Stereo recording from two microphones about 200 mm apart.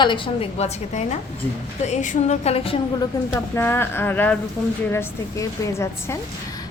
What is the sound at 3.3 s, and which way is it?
A woman's voice, 10° left (ahead or behind).